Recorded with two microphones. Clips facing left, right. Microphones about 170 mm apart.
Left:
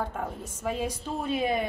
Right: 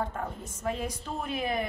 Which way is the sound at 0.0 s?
10° left (ahead or behind).